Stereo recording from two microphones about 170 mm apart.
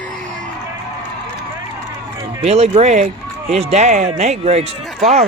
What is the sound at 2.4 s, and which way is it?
Speech, 40° right (ahead or behind).